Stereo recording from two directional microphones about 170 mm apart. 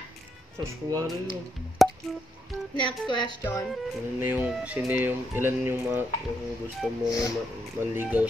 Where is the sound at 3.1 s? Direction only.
25° left (ahead or behind).